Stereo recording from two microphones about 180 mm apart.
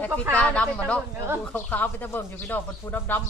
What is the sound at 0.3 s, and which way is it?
Speech, 5° left (ahead or behind).